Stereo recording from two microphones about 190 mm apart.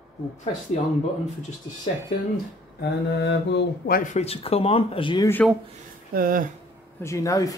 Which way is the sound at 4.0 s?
35° left (ahead or behind).